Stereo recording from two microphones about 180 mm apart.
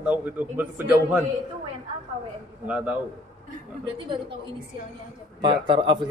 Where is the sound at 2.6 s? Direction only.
5° right (ahead or behind).